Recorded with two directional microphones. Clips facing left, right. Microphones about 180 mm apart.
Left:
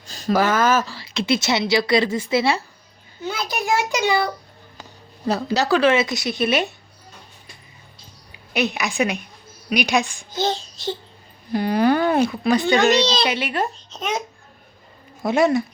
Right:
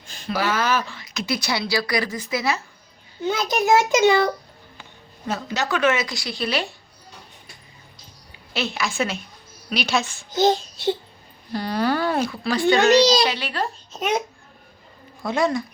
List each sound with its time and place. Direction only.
0.0 s speech: 40° left (ahead or behind)
3.2 s a child's voice: 20° right (ahead or behind)
4.8 s speech: 35° left (ahead or behind)
8.5 s speech: 15° left (ahead or behind)
11.5 s speech: 15° left (ahead or behind)
13.9 s a child's voice: 10° right (ahead or behind)
15.2 s speech: 20° left (ahead or behind)